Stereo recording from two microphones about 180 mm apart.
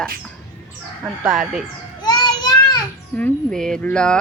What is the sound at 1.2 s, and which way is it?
Speech, centre (ahead or behind).